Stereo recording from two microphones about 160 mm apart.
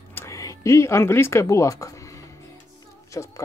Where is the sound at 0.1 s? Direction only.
15° left (ahead or behind).